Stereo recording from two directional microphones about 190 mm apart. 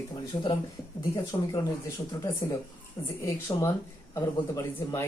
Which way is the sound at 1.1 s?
20° left (ahead or behind).